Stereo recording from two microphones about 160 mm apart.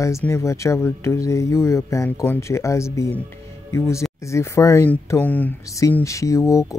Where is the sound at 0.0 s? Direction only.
20° left (ahead or behind).